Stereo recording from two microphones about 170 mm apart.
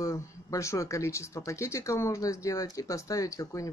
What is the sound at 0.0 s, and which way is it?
Speech, 20° left (ahead or behind).